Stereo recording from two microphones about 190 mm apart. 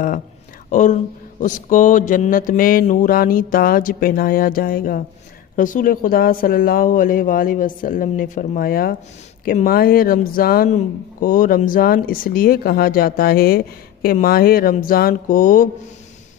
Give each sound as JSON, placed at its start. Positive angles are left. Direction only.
{"t": 0.7, "sound": "speech", "side_deg": 40}